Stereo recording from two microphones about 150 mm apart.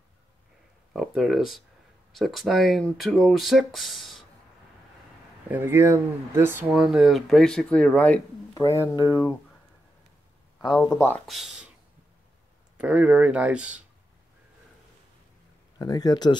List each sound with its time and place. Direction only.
0.9 s speech: centre (ahead or behind)
5.5 s speech: 15° right (ahead or behind)
6.7 s speech: 5° right (ahead or behind)
8.5 s speech: 20° left (ahead or behind)
10.9 s speech: 15° left (ahead or behind)
11.2 s speech: centre (ahead or behind)
12.7 s speech: 10° right (ahead or behind)
15.8 s speech: 25° left (ahead or behind)